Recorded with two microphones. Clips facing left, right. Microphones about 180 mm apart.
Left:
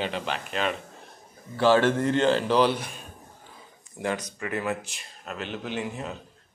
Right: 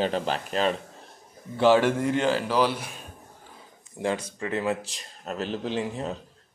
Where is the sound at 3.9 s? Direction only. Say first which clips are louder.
Right 2 dB; 25° right (ahead or behind).